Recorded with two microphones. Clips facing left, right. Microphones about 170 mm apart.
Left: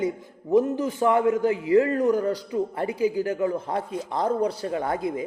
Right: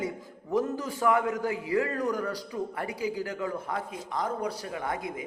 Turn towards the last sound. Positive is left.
turn(degrees=30)  # may be behind; listen again after turning